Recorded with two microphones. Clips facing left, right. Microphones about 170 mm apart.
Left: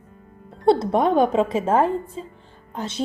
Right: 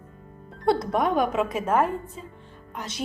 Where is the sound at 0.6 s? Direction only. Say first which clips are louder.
Left 5 dB; 25° left (ahead or behind).